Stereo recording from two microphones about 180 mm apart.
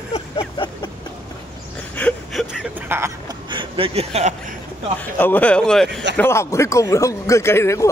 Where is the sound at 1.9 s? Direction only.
10° left (ahead or behind).